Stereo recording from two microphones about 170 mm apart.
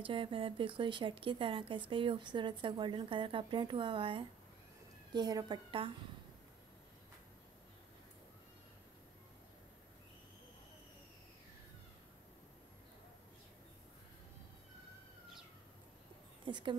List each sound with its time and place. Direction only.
0.0 s a woman's voice: 30° right (ahead or behind)
16.4 s speech: 30° right (ahead or behind)